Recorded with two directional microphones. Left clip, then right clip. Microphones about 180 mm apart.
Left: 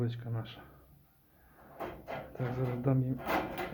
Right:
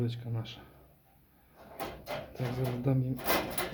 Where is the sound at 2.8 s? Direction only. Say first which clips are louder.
Left 1 dB; 5° right (ahead or behind).